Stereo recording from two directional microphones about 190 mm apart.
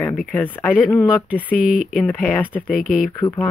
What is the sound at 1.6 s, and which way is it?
Speech, 45° left (ahead or behind).